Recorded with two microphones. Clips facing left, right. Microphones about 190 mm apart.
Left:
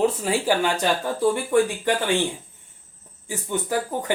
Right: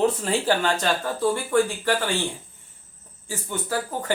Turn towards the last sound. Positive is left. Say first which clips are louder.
# left 2 dB
turn(degrees=15)  # may be behind; listen again after turning